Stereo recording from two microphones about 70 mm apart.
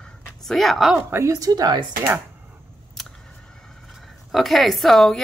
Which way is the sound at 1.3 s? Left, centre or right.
Right.